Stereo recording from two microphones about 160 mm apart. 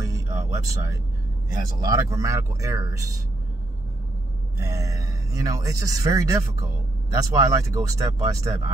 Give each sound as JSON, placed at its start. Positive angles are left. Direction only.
{"t": 0.0, "sound": "music", "side_deg": -20}
{"t": 1.5, "sound": "speech", "side_deg": -20}
{"t": 4.6, "sound": "speech", "side_deg": -20}